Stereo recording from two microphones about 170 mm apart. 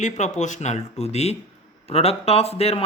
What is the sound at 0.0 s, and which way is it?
Speech, 45° left (ahead or behind).